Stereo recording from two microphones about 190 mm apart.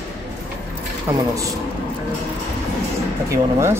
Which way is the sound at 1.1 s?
15° right (ahead or behind).